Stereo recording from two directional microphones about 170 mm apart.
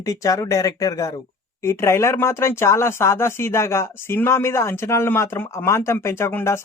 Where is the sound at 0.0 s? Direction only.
20° left (ahead or behind).